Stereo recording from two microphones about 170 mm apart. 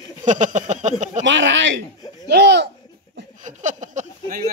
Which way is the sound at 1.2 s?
90° right.